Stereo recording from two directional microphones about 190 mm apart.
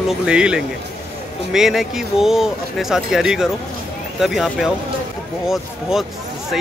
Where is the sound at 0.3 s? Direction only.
5° right (ahead or behind).